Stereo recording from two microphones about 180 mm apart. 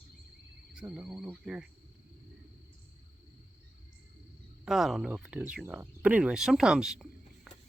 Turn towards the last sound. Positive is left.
turn(degrees=0)  # may be behind; listen again after turning